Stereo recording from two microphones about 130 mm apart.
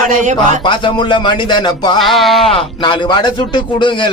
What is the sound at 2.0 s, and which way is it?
Speech, centre (ahead or behind).